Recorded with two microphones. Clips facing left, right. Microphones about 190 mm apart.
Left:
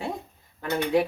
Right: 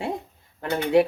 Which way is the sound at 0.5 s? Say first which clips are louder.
Right 4 dB; 25° right (ahead or behind).